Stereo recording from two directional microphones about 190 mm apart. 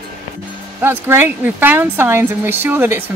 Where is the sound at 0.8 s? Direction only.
10° right (ahead or behind).